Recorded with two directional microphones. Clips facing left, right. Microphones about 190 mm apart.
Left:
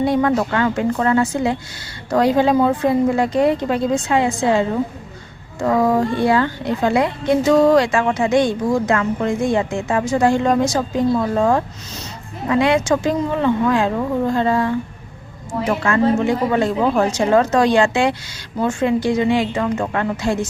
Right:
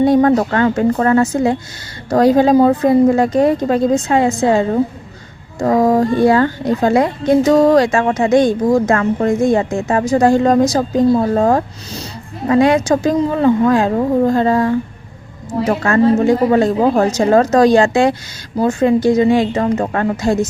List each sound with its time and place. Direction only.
0.0 s a woman's voice: 40° right (ahead or behind)